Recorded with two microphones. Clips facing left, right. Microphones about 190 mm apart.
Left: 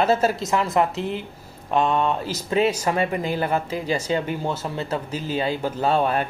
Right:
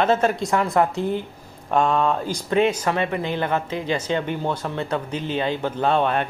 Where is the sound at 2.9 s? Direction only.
40° left (ahead or behind).